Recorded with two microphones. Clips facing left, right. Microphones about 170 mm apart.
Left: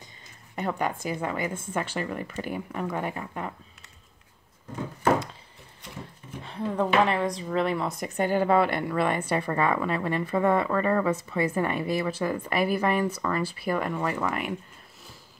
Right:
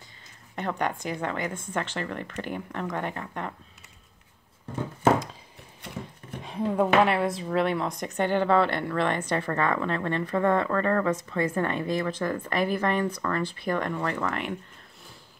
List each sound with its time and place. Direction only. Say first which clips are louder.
0.6 s speech: left 1 dB; 5° left (ahead or behind)
6.4 s speech: right 2 dB; 10° right (ahead or behind); by 14.6 s 10° left (ahead or behind)